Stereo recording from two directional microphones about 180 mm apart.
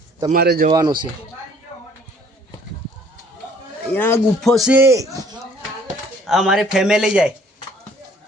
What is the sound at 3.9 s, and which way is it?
Speech, 10° left (ahead or behind).